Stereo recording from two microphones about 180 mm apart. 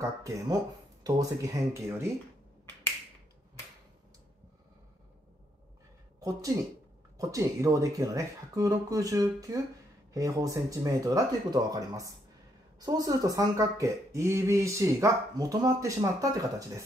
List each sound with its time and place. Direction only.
0.2 s speech: 20° right (ahead or behind)
7.2 s speech: 20° right (ahead or behind)